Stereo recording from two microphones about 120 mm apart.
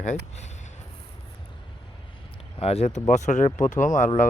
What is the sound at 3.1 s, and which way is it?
Speech, 85° left.